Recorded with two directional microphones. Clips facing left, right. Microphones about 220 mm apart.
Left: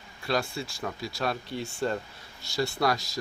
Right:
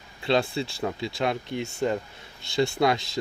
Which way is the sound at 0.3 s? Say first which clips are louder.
Right 5 dB; 25° right (ahead or behind).